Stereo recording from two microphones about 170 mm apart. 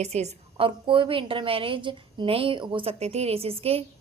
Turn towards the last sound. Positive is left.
turn(degrees=-35)  # may be behind; listen again after turning